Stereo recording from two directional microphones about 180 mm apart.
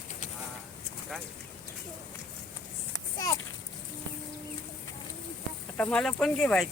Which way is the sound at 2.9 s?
20° left (ahead or behind).